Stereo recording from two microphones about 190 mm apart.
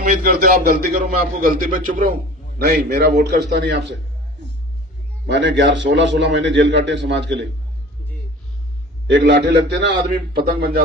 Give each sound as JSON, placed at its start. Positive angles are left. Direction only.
{"t": 0.0, "sound": "a man's voice", "side_deg": -45}
{"t": 2.6, "sound": "a man's voice", "side_deg": -55}
{"t": 5.2, "sound": "a man's voice", "side_deg": -70}
{"t": 9.0, "sound": "a man's voice", "side_deg": -65}